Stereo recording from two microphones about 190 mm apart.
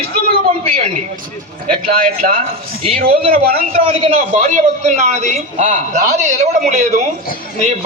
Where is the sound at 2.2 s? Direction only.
40° right (ahead or behind).